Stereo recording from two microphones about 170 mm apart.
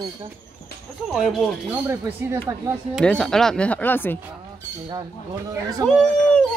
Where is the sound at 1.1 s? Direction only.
Centre (ahead or behind).